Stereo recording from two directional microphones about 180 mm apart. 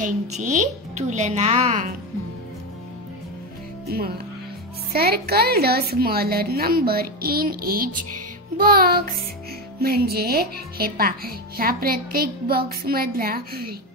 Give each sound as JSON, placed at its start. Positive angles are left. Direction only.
{"t": 0.0, "sound": "a woman's voice", "side_deg": -45}
{"t": 4.9, "sound": "speech", "side_deg": -60}